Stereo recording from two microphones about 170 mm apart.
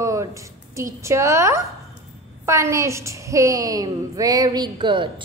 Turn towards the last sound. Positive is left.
turn(degrees=-30)  # may be behind; listen again after turning